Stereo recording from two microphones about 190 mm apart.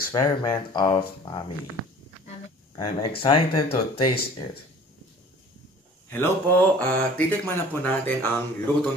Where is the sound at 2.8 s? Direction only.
25° left (ahead or behind).